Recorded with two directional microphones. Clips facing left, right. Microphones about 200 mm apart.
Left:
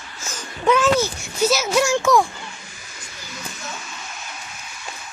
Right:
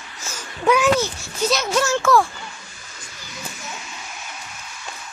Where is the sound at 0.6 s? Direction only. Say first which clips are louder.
Even; 10° right (ahead or behind).